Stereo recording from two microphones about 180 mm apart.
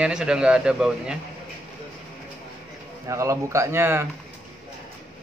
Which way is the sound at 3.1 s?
15° right (ahead or behind).